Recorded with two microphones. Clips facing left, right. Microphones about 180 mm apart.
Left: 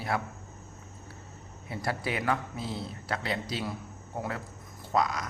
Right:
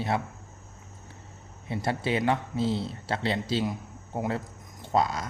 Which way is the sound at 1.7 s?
25° right (ahead or behind).